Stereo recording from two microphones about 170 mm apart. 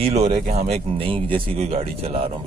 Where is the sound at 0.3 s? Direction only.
55° right (ahead or behind).